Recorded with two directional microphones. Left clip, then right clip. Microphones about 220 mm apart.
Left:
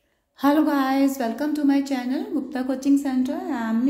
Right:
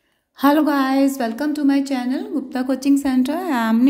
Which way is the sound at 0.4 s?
25° right (ahead or behind).